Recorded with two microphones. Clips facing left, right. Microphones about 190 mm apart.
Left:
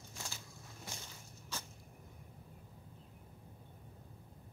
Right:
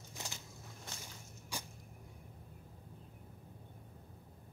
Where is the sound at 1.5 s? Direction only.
10° right (ahead or behind).